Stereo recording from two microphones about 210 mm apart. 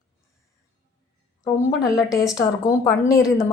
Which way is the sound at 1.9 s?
15° left (ahead or behind).